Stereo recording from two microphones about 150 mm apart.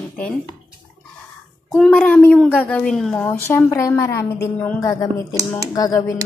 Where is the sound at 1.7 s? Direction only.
5° left (ahead or behind).